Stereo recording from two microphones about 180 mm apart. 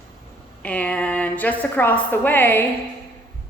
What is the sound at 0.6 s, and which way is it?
A woman's voice, 5° left (ahead or behind).